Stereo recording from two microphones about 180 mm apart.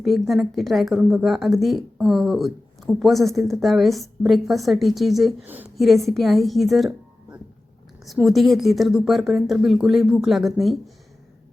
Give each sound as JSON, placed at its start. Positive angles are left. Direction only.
{"t": 0.0, "sound": "a woman's voice", "side_deg": 0}